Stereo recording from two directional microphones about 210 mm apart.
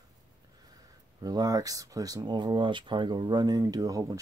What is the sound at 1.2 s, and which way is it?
Speech, 20° right (ahead or behind).